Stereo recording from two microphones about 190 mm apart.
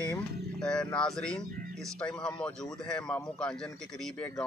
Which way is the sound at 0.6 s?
5° left (ahead or behind).